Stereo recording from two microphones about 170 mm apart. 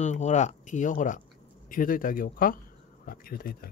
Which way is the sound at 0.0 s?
45° left (ahead or behind).